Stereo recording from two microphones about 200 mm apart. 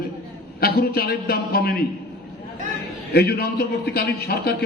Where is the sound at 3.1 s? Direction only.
50° left (ahead or behind).